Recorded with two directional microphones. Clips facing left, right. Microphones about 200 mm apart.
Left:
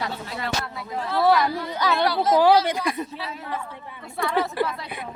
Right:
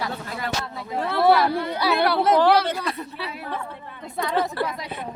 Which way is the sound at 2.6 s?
15° left (ahead or behind).